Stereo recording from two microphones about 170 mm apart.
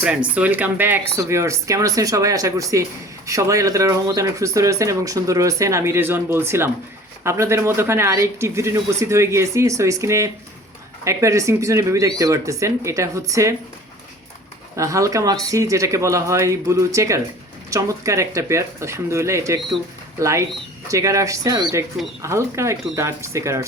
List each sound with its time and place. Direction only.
0.3 s speech: 10° right (ahead or behind)
14.8 s speech: 20° right (ahead or behind)